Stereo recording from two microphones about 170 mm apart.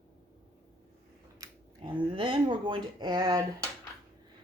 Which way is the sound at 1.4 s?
20° right (ahead or behind).